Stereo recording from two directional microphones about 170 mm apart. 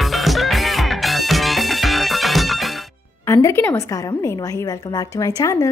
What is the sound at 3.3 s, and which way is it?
A woman's voice, 15° left (ahead or behind).